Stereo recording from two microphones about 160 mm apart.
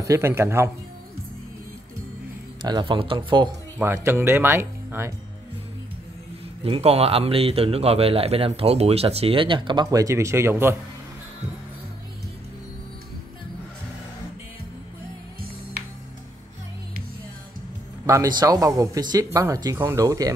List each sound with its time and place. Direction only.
0.0 s speech: 15° right (ahead or behind)
2.6 s a man's voice: 30° right (ahead or behind)
3.7 s speech: 15° right (ahead or behind)
6.6 s a man's voice: 40° right (ahead or behind); by 10.8 s 15° right (ahead or behind)
18.0 s speech: 20° right (ahead or behind)